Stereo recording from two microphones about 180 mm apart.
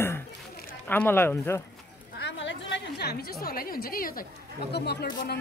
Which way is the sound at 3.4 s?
55° left (ahead or behind).